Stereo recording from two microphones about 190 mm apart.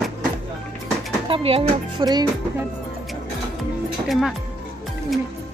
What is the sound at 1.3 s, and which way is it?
Speech, 30° right (ahead or behind).